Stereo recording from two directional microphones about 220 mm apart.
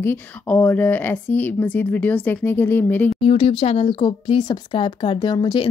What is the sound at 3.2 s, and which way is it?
Speech, 25° left (ahead or behind).